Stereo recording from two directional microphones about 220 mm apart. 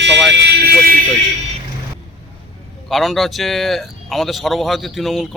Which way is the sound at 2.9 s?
Centre (ahead or behind).